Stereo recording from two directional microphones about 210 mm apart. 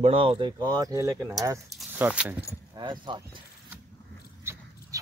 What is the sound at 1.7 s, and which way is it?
Speech, 5° right (ahead or behind).